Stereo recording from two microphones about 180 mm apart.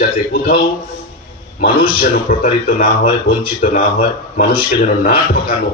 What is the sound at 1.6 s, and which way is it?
Speech, 50° left (ahead or behind).